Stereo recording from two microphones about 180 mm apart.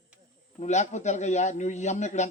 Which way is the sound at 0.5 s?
40° left (ahead or behind).